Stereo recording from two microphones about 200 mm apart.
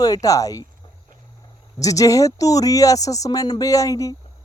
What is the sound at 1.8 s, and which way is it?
Speech, 15° left (ahead or behind).